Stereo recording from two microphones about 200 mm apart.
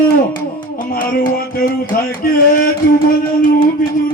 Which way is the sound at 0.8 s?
45° left (ahead or behind).